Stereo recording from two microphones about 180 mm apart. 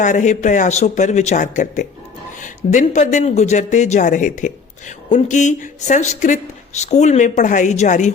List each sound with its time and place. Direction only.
0.0 s speech: 45° left (ahead or behind)